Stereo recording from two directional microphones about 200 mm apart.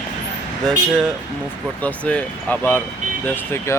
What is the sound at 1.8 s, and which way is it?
Speech, 5° left (ahead or behind).